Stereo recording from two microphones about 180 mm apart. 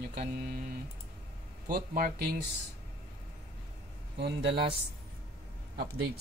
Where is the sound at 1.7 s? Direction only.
55° right (ahead or behind).